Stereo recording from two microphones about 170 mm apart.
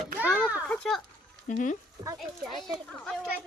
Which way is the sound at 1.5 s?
50° left (ahead or behind).